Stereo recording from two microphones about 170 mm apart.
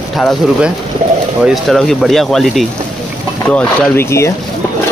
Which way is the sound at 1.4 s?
Centre (ahead or behind).